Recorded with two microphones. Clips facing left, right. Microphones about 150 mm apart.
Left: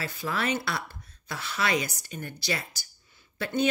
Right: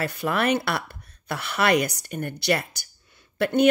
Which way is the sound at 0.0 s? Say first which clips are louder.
Right 6 dB; 60° right (ahead or behind).